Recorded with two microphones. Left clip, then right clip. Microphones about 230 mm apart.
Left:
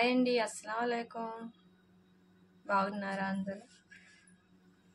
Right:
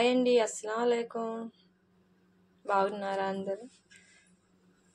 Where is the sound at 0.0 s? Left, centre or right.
Centre.